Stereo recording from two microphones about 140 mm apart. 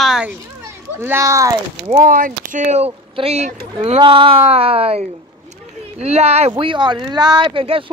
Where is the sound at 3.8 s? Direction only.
35° right (ahead or behind).